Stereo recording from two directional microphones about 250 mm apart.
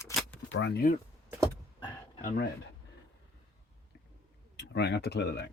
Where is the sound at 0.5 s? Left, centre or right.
Left.